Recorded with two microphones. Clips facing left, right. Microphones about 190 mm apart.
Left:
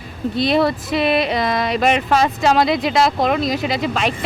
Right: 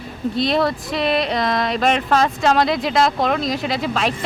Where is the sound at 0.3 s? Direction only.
Centre (ahead or behind).